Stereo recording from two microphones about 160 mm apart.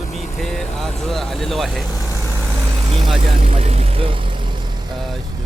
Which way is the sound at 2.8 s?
35° right (ahead or behind).